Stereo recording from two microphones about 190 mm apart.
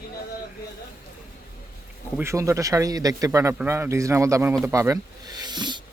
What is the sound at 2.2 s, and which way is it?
Speech, 15° right (ahead or behind).